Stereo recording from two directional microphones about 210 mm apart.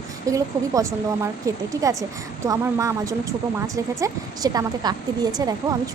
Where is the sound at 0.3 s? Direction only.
15° right (ahead or behind).